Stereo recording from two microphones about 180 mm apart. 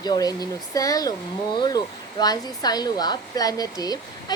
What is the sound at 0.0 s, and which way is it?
Speech, 20° left (ahead or behind).